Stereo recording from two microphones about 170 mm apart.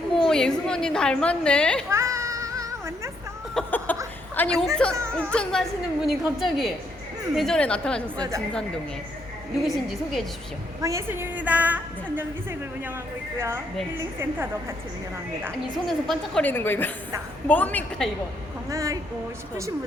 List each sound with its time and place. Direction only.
0.2 s a woman's voice: 5° left (ahead or behind)
1.9 s cat: 15° right (ahead or behind)
3.5 s a sound: 10° left (ahead or behind)
4.4 s a woman's voice: 5° left (ahead or behind)
9.6 s a woman's voice: centre (ahead or behind)
10.8 s a woman's voice: 20° right (ahead or behind)
15.9 s a woman's voice: centre (ahead or behind)
18.7 s a woman's voice: 20° right (ahead or behind)